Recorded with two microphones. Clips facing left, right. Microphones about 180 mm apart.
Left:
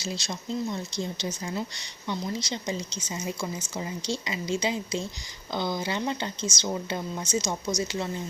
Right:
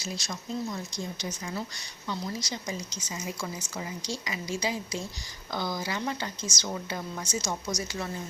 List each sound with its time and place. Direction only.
0.0 s speech: 25° left (ahead or behind)